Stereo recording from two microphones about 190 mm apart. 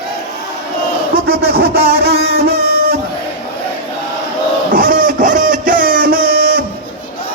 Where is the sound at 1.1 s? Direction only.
55° right (ahead or behind).